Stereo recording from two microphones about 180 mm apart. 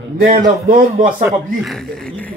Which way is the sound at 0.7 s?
50° right (ahead or behind).